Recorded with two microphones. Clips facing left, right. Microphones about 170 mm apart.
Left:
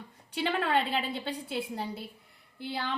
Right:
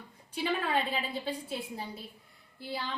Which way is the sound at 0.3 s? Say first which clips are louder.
Left 2 dB; 75° left (ahead or behind).